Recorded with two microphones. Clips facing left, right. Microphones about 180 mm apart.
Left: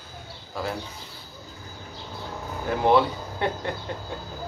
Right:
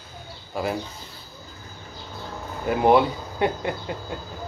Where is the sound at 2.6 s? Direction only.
10° right (ahead or behind).